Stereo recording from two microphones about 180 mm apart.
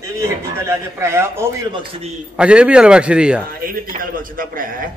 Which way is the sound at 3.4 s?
55° right (ahead or behind).